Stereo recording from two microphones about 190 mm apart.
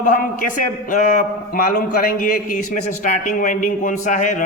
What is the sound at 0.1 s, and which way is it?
A man's voice, 45° left (ahead or behind).